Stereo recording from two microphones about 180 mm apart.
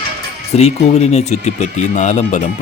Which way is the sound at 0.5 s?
35° left (ahead or behind).